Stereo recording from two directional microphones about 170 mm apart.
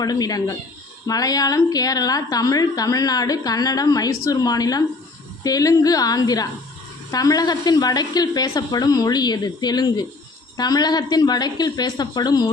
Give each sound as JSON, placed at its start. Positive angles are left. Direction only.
{"t": 0.0, "sound": "a woman's voice", "side_deg": 20}